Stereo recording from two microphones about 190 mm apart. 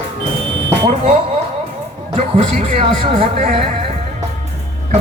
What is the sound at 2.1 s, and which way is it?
Speech, 30° right (ahead or behind).